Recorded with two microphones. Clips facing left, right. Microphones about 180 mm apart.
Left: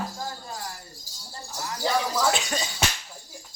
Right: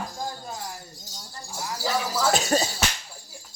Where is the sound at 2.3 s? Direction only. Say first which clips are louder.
Right 6 dB; 40° right (ahead or behind).